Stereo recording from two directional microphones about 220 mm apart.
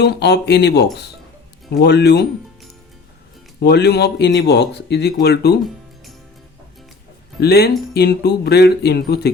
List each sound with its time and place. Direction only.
0.0 s speech: 50° left (ahead or behind)
3.6 s speech: 50° left (ahead or behind)
7.3 s speech: 45° left (ahead or behind)